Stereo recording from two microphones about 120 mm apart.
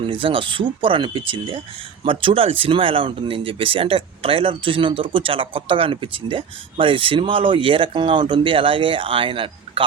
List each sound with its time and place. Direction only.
0.1 s speech: 45° right (ahead or behind)